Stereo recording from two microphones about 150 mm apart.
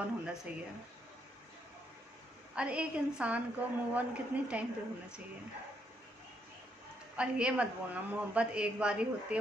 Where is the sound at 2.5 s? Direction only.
10° right (ahead or behind).